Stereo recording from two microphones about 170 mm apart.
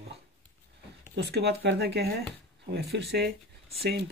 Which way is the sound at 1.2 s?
75° right (ahead or behind).